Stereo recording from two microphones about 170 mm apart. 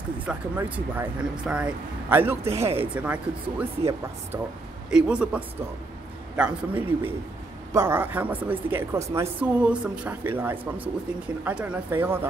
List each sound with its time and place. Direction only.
0.3 s speech: 10° right (ahead or behind)
4.9 s speech: 5° right (ahead or behind)